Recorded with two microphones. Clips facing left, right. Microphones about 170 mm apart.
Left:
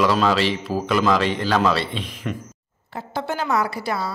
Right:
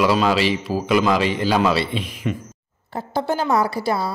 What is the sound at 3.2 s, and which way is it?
Speech, 35° right (ahead or behind).